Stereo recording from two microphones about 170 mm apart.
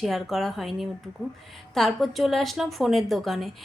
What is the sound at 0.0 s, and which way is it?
Speech, centre (ahead or behind).